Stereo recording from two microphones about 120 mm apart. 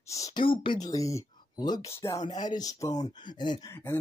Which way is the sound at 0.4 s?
45° left (ahead or behind).